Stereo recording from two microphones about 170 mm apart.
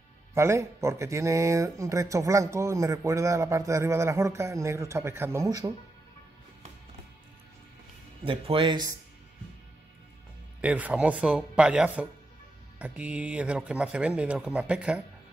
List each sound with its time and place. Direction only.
0.3 s speech: 15° right (ahead or behind)
8.2 s speech: 30° right (ahead or behind)
10.6 s speech: 10° right (ahead or behind)